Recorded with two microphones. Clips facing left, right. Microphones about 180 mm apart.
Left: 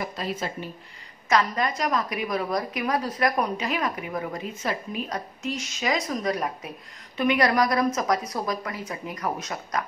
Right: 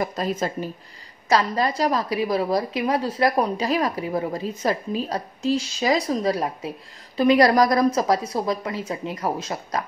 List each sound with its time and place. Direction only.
0.0 s speech: 45° right (ahead or behind)
1.3 s a woman's voice: 30° right (ahead or behind)